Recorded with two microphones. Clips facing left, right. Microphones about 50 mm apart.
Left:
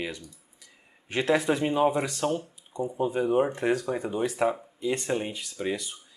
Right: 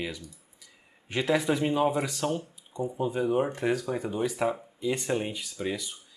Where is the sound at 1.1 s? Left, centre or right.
Centre.